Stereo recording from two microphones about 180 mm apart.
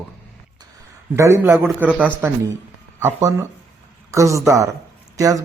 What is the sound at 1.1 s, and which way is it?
Speech, 15° right (ahead or behind).